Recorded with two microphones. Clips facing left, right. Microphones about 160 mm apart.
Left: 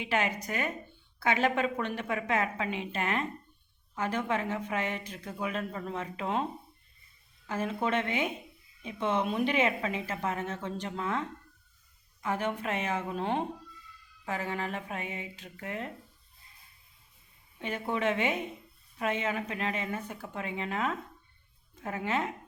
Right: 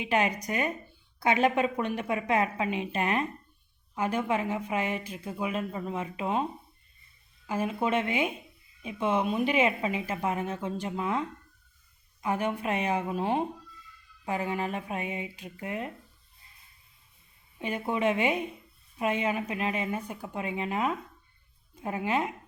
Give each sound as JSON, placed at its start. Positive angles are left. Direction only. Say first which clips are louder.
{"t": 0.0, "sound": "speech", "louder": "right 3 dB", "side_deg": -15}
{"t": 17.6, "sound": "speech", "louder": "right 3 dB", "side_deg": -15}